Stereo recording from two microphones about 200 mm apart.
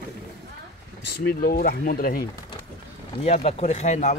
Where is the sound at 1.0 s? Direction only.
55° left (ahead or behind).